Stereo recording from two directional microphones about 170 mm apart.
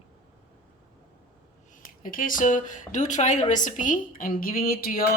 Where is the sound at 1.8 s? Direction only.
55° left (ahead or behind).